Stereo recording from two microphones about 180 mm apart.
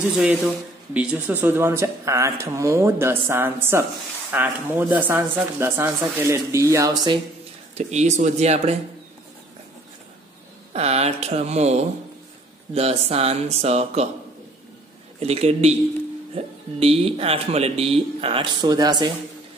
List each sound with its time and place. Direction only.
0.1 s speech: 5° right (ahead or behind); by 7.2 s 20° right (ahead or behind)
7.7 s speech: 40° right (ahead or behind)
10.7 s speech: 35° right (ahead or behind)
15.1 s speech: 35° right (ahead or behind)